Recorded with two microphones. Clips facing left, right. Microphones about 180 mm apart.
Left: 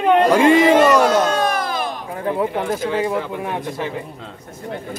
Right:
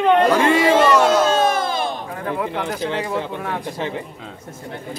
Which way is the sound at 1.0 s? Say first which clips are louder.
Right 1 dB; 25° right (ahead or behind).